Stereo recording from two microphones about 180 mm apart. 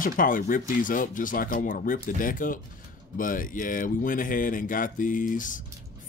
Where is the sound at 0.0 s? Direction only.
50° left (ahead or behind).